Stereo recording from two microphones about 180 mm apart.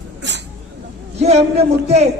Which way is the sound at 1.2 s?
35° right (ahead or behind).